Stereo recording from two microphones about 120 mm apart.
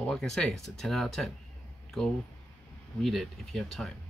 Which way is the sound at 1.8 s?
5° left (ahead or behind).